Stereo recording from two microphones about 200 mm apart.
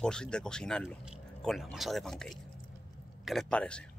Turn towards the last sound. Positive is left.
turn(degrees=5)  # may be behind; listen again after turning